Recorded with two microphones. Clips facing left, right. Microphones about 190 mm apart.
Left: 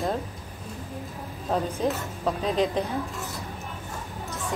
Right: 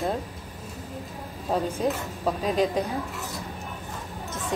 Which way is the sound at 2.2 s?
5° right (ahead or behind).